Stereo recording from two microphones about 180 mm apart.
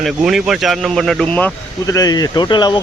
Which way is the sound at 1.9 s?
20° left (ahead or behind).